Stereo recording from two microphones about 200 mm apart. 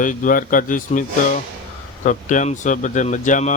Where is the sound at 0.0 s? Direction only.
40° left (ahead or behind).